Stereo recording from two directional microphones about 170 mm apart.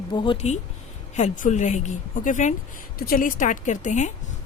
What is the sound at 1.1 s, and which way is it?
A woman's voice, 45° left (ahead or behind).